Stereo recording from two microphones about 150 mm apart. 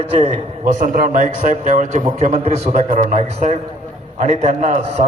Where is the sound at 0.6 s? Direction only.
60° right (ahead or behind).